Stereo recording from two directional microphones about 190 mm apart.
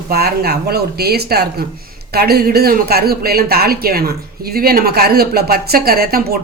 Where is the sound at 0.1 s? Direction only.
55° right (ahead or behind).